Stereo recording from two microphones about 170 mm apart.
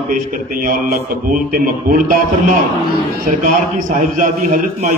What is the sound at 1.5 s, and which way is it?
A man's voice, 55° right (ahead or behind).